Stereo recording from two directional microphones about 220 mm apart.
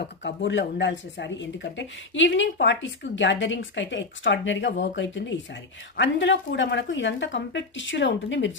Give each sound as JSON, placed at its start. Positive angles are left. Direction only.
{"t": 0.0, "sound": "speech", "side_deg": 50}